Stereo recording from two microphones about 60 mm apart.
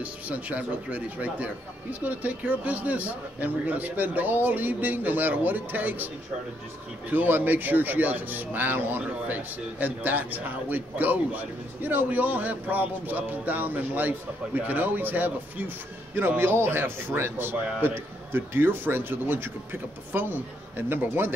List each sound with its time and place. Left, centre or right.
0.0 s speech: right
7.1 s speech: right